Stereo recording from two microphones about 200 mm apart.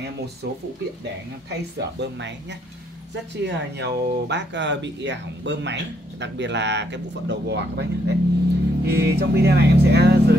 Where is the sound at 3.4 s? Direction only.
60° right (ahead or behind).